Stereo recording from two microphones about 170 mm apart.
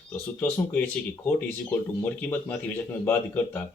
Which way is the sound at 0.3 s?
10° left (ahead or behind).